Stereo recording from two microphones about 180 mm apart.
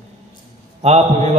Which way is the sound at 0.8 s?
35° right (ahead or behind).